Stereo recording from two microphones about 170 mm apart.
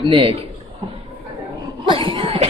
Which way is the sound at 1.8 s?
30° right (ahead or behind).